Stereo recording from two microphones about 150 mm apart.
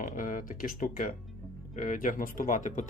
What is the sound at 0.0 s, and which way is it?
Speech, 60° left (ahead or behind).